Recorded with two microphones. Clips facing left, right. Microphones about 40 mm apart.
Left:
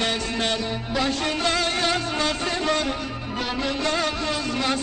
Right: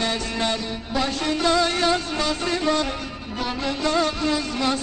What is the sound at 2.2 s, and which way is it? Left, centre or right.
Music, left.